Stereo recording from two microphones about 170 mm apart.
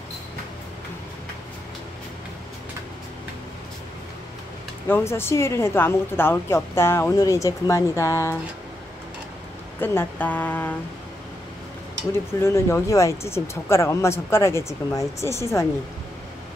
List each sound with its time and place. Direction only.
4.8 s speech: 15° left (ahead or behind)
9.8 s speech: 10° left (ahead or behind)
12.1 s speech: 15° left (ahead or behind)